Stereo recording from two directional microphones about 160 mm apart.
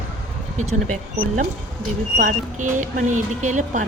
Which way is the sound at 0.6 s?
50° right (ahead or behind).